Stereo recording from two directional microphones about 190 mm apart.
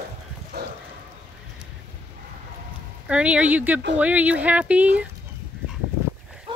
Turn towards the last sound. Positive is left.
turn(degrees=-25)  # may be behind; listen again after turning